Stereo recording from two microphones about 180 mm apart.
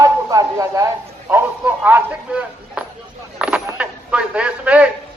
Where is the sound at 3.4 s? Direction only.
5° right (ahead or behind).